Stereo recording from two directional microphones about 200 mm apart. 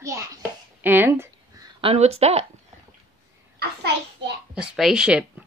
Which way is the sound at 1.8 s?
30° right (ahead or behind).